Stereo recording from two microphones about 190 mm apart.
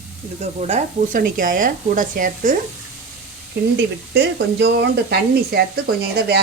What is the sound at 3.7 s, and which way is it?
Speech, 65° right (ahead or behind).